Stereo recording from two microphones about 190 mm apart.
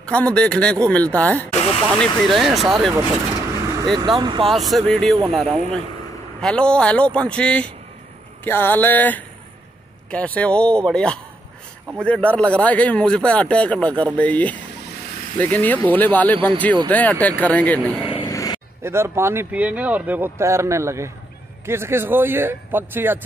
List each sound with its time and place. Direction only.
0.0 s speech: 5° left (ahead or behind)
3.8 s speech: 25° right (ahead or behind)
4.5 s speech: centre (ahead or behind)
18.0 s vehicle: 25° left (ahead or behind)
18.8 s speech: 15° right (ahead or behind)